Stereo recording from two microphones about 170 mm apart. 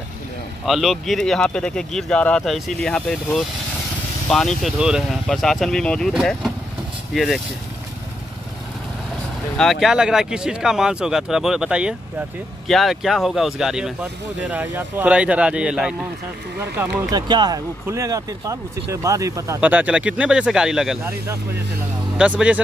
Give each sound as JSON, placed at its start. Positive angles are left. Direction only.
{"t": 0.7, "sound": "speech", "side_deg": 0}
{"t": 4.3, "sound": "speech", "side_deg": 0}
{"t": 9.6, "sound": "speech", "side_deg": 0}
{"t": 17.1, "sound": "speech", "side_deg": -25}
{"t": 22.1, "sound": "speech", "side_deg": -5}